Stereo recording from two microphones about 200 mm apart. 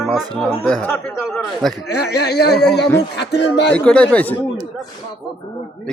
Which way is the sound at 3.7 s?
5° left (ahead or behind).